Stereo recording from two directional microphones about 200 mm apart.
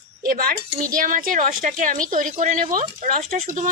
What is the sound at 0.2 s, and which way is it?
Speech, 45° right (ahead or behind).